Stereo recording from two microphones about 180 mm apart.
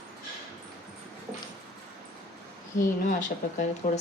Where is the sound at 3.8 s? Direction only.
45° left (ahead or behind).